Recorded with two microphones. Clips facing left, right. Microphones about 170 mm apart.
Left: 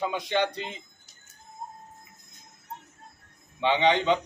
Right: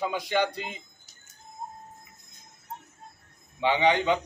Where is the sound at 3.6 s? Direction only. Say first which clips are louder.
Even; 10° right (ahead or behind).